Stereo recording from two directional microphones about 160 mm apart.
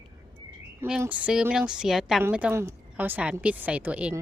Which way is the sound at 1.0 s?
10° right (ahead or behind).